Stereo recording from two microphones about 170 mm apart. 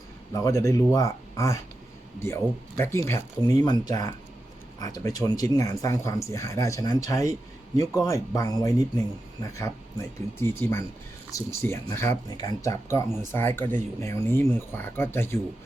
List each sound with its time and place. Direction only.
0.3 s speech: 20° left (ahead or behind)